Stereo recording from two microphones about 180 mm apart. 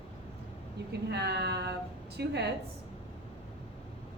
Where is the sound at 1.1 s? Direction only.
70° right (ahead or behind).